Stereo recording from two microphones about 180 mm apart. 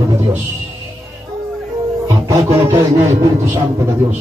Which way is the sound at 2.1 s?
15° right (ahead or behind).